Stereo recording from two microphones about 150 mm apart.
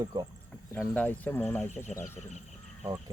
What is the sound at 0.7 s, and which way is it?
Speech, 10° left (ahead or behind).